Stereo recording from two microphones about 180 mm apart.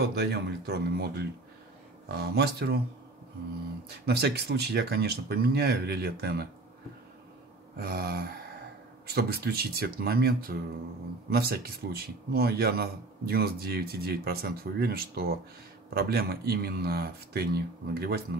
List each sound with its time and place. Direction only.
0.0 s speech: 65° right (ahead or behind)
4.0 s speech: 65° right (ahead or behind)
7.8 s speech: 60° right (ahead or behind)